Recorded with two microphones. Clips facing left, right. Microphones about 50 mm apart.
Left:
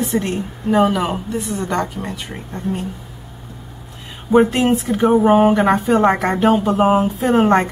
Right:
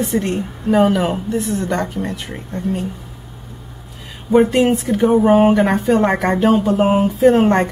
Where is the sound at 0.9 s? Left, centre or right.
Centre.